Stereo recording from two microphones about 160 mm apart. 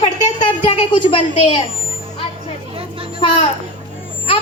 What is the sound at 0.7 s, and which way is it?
Speech, 30° left (ahead or behind).